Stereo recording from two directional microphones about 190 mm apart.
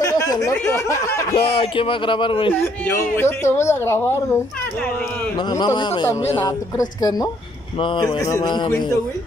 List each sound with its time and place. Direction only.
0.0 s a sound: 20° left (ahead or behind)
0.5 s speech: 15° left (ahead or behind)
1.3 s speech: 30° left (ahead or behind)
3.2 s speech: 15° left (ahead or behind)
5.6 s speech: 25° left (ahead or behind)